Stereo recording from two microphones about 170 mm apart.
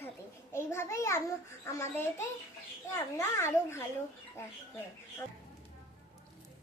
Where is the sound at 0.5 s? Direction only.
15° left (ahead or behind).